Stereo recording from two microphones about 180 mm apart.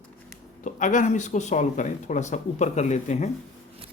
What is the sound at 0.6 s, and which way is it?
Speech, 45° left (ahead or behind).